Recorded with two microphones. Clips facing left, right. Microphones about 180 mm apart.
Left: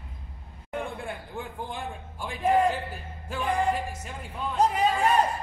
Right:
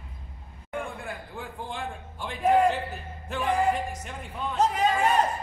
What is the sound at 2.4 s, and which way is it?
Speech, centre (ahead or behind).